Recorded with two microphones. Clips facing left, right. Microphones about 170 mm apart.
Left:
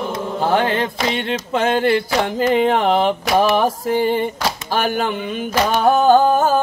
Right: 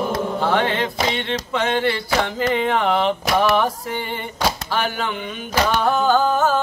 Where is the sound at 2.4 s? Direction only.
35° left (ahead or behind).